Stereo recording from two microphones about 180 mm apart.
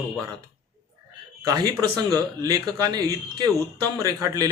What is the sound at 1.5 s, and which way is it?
Speech, 20° right (ahead or behind).